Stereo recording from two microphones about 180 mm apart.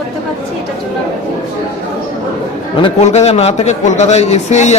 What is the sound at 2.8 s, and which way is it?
A man's voice, 40° left (ahead or behind).